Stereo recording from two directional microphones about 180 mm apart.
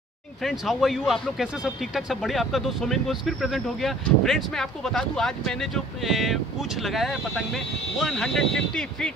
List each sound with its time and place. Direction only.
0.4 s speech: centre (ahead or behind)